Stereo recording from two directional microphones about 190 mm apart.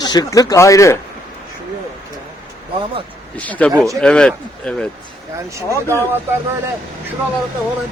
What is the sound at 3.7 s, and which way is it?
Speech, 15° right (ahead or behind).